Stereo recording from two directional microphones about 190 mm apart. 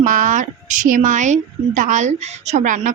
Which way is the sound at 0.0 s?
40° right (ahead or behind).